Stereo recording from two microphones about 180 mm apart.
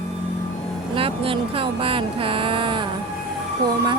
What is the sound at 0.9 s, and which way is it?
Speech, 30° right (ahead or behind).